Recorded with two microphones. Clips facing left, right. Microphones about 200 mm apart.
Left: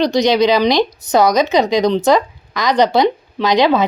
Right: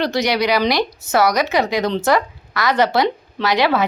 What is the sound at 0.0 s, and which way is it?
A woman's voice, 20° left (ahead or behind).